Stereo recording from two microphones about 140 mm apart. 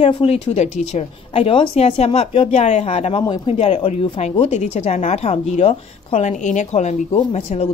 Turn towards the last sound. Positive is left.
turn(degrees=50)  # may be behind; listen again after turning